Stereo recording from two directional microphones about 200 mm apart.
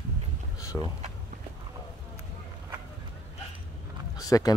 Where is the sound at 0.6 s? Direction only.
15° left (ahead or behind).